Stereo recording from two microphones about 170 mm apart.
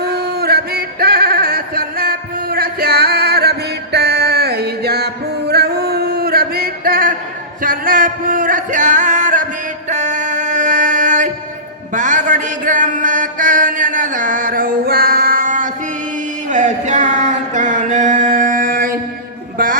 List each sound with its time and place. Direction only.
0.1 s male singing: 70° right (ahead or behind)
3.9 s music: 70° right (ahead or behind); by 11.3 s 50° right (ahead or behind)
11.9 s a sound: 50° right (ahead or behind)